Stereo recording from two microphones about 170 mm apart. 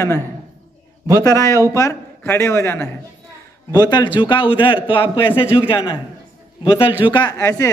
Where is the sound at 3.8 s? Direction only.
25° left (ahead or behind).